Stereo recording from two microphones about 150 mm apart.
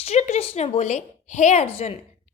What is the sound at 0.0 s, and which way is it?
A woman's voice, 45° left (ahead or behind).